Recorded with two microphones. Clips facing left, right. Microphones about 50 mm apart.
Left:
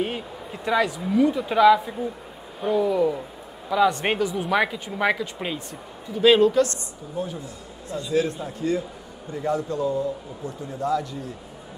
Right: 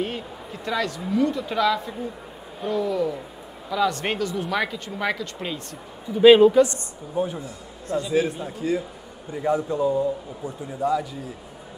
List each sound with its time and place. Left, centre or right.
0.0 s speech: centre
6.2 s a man's voice: centre
8.1 s a man's voice: centre